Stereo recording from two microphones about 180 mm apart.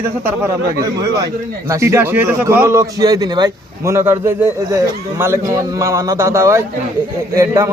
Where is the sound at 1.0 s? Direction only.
15° right (ahead or behind).